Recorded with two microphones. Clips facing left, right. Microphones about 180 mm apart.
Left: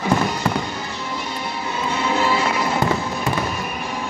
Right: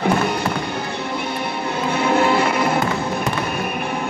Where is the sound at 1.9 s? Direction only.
60° right (ahead or behind).